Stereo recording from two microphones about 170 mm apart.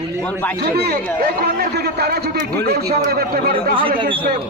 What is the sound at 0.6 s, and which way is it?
A man's voice, 70° right (ahead or behind).